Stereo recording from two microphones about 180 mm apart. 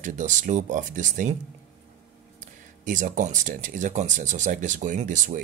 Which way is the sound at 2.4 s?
45° right (ahead or behind).